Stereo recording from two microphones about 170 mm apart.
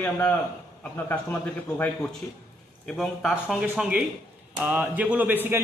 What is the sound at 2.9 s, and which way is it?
A man's voice, centre (ahead or behind).